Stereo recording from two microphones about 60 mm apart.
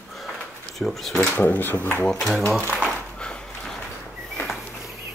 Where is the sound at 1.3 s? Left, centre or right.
Left.